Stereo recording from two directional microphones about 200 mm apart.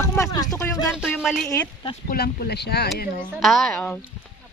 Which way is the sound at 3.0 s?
45° left (ahead or behind).